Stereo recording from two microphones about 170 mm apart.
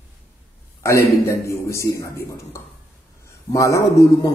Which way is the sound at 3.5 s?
20° left (ahead or behind).